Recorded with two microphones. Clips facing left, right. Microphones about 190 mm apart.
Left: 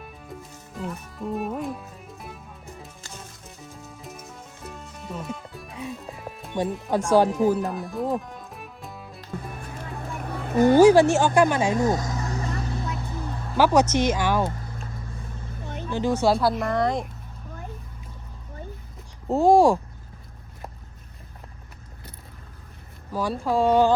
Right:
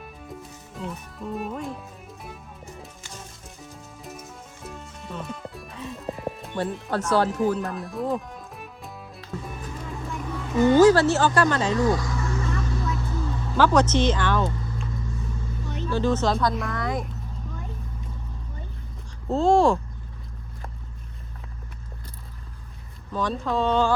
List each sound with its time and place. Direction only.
0.0 s music: centre (ahead or behind)
6.9 s speech: 10° left (ahead or behind)
7.6 s music: centre (ahead or behind)
10.1 s a sound: 55° left (ahead or behind)
10.8 s speech: 10° left (ahead or behind)
11.9 s vehicle: 45° left (ahead or behind)
13.6 s speech: 10° left (ahead or behind)
15.6 s vehicle: 50° left (ahead or behind)
15.9 s speech: 15° left (ahead or behind)
19.3 s speech: 15° left (ahead or behind)
23.1 s speech: 10° left (ahead or behind)